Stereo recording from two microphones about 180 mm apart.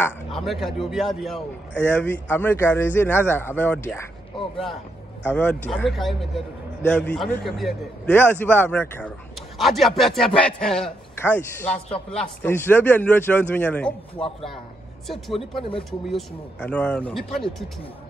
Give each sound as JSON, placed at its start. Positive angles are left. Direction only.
{"t": 0.5, "sound": "a man's voice", "side_deg": 0}
{"t": 1.9, "sound": "a man's voice", "side_deg": 10}
{"t": 5.3, "sound": "a man's voice", "side_deg": 5}
{"t": 8.1, "sound": "a man's voice", "side_deg": 10}
{"t": 14.1, "sound": "speech", "side_deg": 30}
{"t": 16.1, "sound": "a man's voice", "side_deg": 5}